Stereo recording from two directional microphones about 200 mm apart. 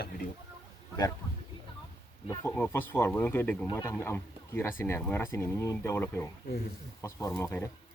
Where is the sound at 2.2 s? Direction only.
20° left (ahead or behind).